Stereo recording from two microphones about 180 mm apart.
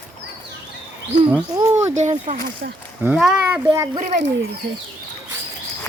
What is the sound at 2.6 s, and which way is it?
Speech, 65° right (ahead or behind).